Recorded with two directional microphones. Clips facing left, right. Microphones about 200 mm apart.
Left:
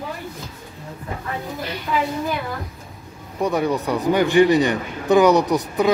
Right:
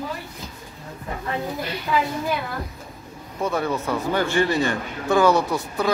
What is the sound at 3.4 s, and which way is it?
A man's voice, 15° left (ahead or behind).